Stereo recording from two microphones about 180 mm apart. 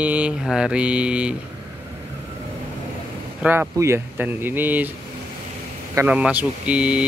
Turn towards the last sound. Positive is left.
turn(degrees=-5)  # may be behind; listen again after turning